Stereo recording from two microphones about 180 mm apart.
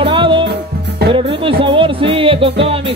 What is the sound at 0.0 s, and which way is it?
Music, 30° right (ahead or behind).